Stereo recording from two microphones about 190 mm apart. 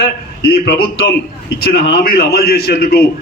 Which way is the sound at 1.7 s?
60° left (ahead or behind).